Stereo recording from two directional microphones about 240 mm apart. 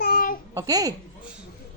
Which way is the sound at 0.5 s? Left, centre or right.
Centre.